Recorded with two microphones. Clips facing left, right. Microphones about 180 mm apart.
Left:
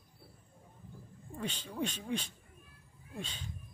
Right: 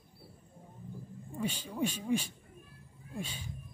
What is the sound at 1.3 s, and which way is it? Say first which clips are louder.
Speech: right 3 dB; 10° right (ahead or behind).